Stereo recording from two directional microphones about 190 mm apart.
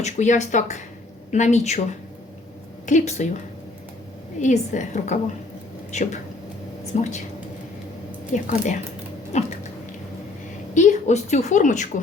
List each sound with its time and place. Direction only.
0.0 s a woman's voice: 40° left (ahead or behind)
2.8 s a woman's voice: 40° left (ahead or behind)
4.4 s a woman's voice: 40° left (ahead or behind)
6.9 s a woman's voice: 40° left (ahead or behind)
8.3 s a woman's voice: 40° left (ahead or behind)
10.8 s a woman's voice: 40° left (ahead or behind)